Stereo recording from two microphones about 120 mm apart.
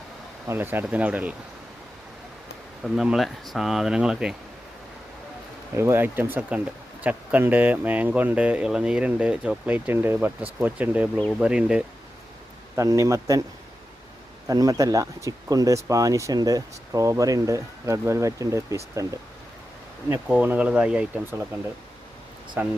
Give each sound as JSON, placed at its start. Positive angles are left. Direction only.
{"t": 0.4, "sound": "speech", "side_deg": -20}
{"t": 2.8, "sound": "speech", "side_deg": -5}
{"t": 5.7, "sound": "speech", "side_deg": -20}
{"t": 12.7, "sound": "speech", "side_deg": -25}
{"t": 14.4, "sound": "speech", "side_deg": -30}
{"t": 20.2, "sound": "speech", "side_deg": -10}
{"t": 22.6, "sound": "speech", "side_deg": -15}